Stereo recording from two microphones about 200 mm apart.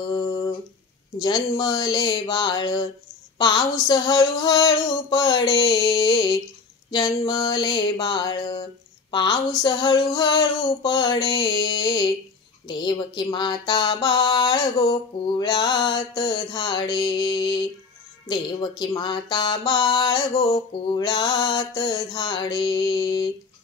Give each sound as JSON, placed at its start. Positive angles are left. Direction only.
{"t": 0.1, "sound": "humming", "side_deg": 20}
{"t": 1.2, "sound": "music", "side_deg": 20}